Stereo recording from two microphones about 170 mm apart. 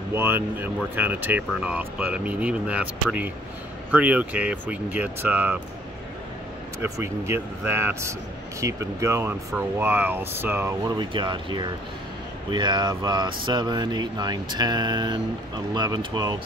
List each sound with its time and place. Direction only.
0.1 s speech: 15° right (ahead or behind)
6.8 s speech: 15° right (ahead or behind)
11.0 s speech: 30° right (ahead or behind)